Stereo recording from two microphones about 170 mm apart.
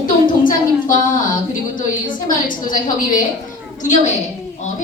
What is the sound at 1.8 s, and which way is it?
A woman's voice, 50° left (ahead or behind).